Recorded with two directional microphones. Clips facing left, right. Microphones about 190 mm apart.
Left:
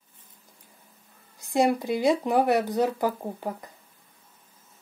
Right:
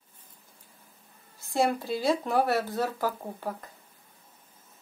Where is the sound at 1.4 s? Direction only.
15° left (ahead or behind).